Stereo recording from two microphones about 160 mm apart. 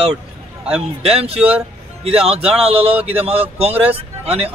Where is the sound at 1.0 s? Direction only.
40° right (ahead or behind).